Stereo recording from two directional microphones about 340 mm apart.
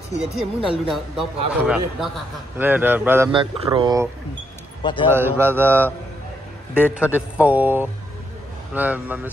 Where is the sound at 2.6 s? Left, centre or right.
Centre.